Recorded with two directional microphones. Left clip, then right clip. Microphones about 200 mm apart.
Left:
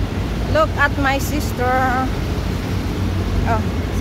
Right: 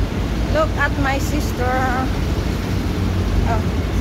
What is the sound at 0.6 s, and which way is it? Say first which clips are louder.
Speech: left 3 dB; 40° left (ahead or behind).